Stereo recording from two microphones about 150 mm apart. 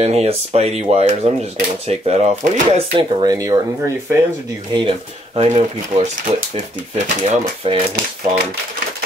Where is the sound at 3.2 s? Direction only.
25° right (ahead or behind).